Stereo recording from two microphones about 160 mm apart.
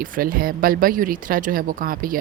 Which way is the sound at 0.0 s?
65° right (ahead or behind).